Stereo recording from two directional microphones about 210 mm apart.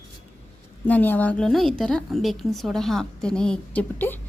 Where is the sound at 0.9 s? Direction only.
10° left (ahead or behind).